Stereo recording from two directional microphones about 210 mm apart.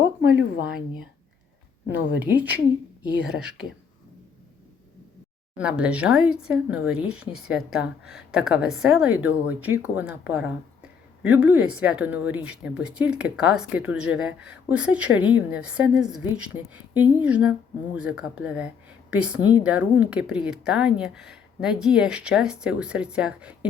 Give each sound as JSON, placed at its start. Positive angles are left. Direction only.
{"t": 2.2, "sound": "speech", "side_deg": -10}
{"t": 5.5, "sound": "speech", "side_deg": -5}